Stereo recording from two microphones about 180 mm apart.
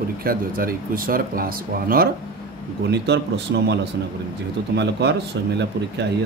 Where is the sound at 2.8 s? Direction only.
70° right (ahead or behind).